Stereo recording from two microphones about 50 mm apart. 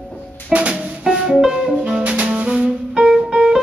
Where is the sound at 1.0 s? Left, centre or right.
Centre.